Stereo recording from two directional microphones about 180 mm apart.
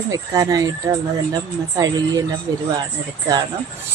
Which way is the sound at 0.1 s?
20° right (ahead or behind).